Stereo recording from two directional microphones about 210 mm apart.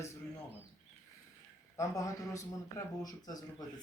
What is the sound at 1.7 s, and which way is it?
A man's voice, 15° left (ahead or behind).